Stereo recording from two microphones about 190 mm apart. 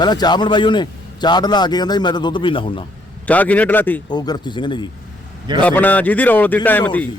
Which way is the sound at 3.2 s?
10° left (ahead or behind).